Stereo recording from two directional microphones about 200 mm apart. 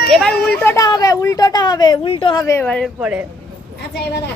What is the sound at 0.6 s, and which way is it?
A woman's voice, 15° left (ahead or behind).